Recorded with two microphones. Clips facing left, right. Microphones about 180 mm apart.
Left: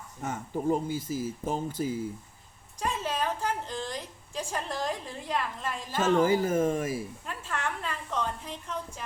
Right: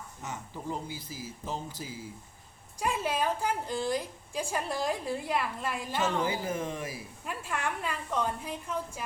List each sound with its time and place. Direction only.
0.2 s speech: 50° left (ahead or behind)
2.8 s a woman's voice: 10° right (ahead or behind)
6.2 s speech: 45° left (ahead or behind)
7.3 s a woman's voice: 10° right (ahead or behind)